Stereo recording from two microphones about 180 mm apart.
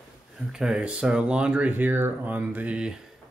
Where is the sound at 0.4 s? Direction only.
5° right (ahead or behind).